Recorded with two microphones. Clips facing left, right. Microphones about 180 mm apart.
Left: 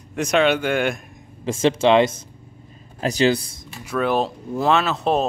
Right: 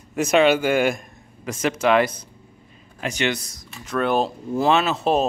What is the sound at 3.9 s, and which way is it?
Speech, centre (ahead or behind).